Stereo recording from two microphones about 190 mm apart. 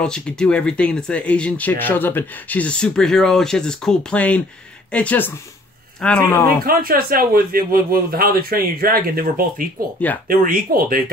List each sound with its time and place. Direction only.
0.0 s speech: 5° left (ahead or behind)
6.6 s speech: 50° right (ahead or behind)